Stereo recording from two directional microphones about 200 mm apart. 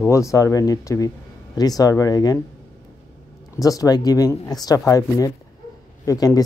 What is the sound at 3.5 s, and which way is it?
Speech, 15° left (ahead or behind).